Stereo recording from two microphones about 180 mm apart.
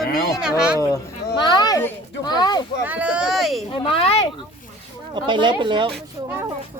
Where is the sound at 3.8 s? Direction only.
30° left (ahead or behind).